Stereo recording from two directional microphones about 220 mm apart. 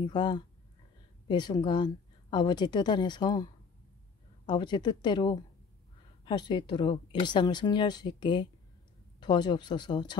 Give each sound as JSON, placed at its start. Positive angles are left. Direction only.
{"t": 0.0, "sound": "speech", "side_deg": 20}
{"t": 4.5, "sound": "speech", "side_deg": 20}